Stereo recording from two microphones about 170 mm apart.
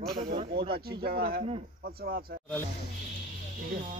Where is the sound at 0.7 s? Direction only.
65° right (ahead or behind).